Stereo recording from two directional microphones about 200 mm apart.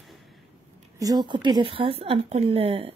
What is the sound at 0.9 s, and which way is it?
A woman's voice, 20° right (ahead or behind).